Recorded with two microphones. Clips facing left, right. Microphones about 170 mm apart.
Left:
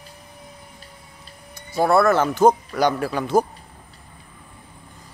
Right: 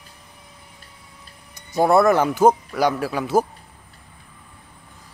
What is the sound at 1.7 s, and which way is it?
Speech, 20° right (ahead or behind).